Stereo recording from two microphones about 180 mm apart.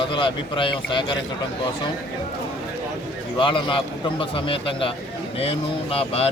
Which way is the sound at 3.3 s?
30° left (ahead or behind).